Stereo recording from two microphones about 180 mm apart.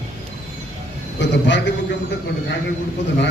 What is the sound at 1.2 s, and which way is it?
Speech, 80° left.